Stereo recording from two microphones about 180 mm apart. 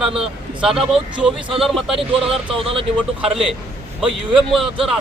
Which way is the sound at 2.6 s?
30° right (ahead or behind).